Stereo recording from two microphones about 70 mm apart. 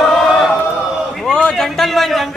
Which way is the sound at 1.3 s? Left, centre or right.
Centre.